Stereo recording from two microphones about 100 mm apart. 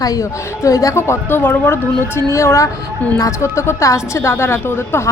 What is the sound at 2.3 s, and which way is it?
A woman's voice, 30° left (ahead or behind).